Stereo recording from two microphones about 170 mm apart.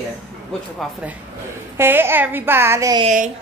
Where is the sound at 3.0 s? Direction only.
45° right (ahead or behind).